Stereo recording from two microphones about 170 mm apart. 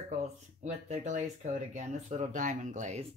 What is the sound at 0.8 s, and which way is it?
Speech, 45° right (ahead or behind).